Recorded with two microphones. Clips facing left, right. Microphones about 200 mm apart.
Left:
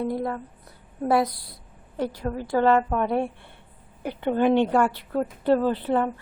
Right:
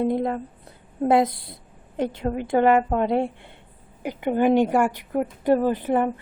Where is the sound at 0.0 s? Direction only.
20° right (ahead or behind).